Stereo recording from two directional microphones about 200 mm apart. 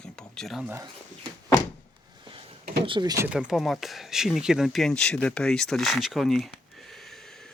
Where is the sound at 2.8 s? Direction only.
25° right (ahead or behind).